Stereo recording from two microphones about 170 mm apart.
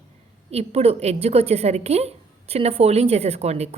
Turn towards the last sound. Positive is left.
turn(degrees=-40)  # may be behind; listen again after turning